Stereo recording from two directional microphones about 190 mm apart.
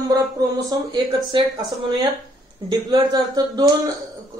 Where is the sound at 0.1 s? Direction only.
20° right (ahead or behind).